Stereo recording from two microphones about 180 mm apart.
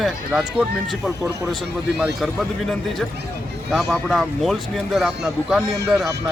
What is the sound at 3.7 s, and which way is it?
Speech, centre (ahead or behind).